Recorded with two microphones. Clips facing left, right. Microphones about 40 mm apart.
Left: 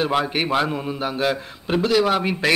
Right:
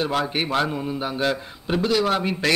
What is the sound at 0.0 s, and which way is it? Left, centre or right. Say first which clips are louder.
A man's voice: left 2 dB; centre.